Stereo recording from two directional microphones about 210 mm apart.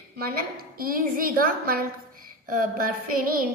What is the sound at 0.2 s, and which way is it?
A woman's voice, 45° right (ahead or behind).